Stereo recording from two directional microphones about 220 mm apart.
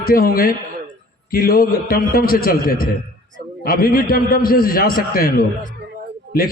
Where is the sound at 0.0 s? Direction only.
40° left (ahead or behind).